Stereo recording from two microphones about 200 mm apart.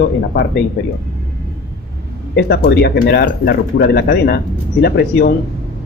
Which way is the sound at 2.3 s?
55° left (ahead or behind).